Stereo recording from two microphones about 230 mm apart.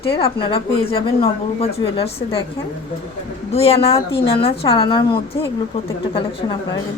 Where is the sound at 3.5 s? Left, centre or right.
Left.